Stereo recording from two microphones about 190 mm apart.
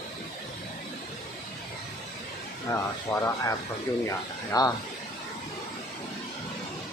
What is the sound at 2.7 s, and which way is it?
Speech, 15° left (ahead or behind).